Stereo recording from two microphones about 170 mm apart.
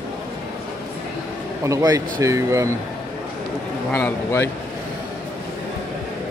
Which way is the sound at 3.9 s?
15° left (ahead or behind).